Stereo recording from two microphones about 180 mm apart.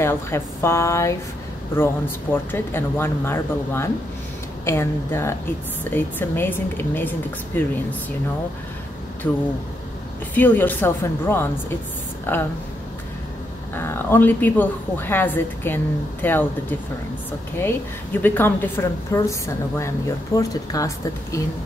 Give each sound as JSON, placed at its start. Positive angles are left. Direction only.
{"t": 0.0, "sound": "a woman's voice", "side_deg": 15}
{"t": 2.3, "sound": "a woman's voice", "side_deg": 10}
{"t": 10.3, "sound": "a woman's voice", "side_deg": 10}
{"t": 13.7, "sound": "a woman's voice", "side_deg": 15}